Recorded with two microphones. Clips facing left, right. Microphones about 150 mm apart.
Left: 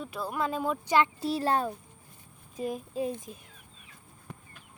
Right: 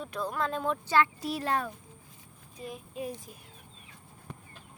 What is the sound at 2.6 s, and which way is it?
Speech, 45° left (ahead or behind).